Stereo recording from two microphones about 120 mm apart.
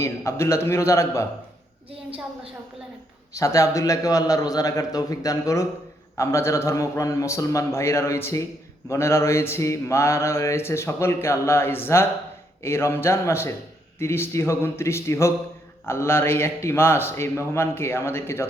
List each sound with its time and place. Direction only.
0.0 s mantra: 25° left (ahead or behind)
3.3 s mantra: 25° left (ahead or behind)